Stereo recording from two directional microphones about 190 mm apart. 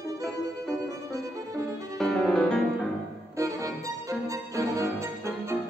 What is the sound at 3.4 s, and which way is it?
Music, 15° right (ahead or behind).